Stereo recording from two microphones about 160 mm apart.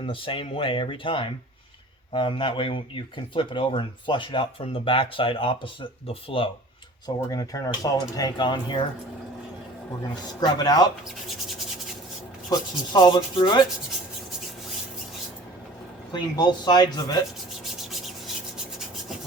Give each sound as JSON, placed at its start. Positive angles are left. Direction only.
{"t": 0.0, "sound": "speech", "side_deg": 35}
{"t": 7.3, "sound": "rub", "side_deg": 20}
{"t": 10.4, "sound": "rub", "side_deg": 25}
{"t": 12.5, "sound": "rub", "side_deg": 25}
{"t": 16.1, "sound": "rub", "side_deg": 25}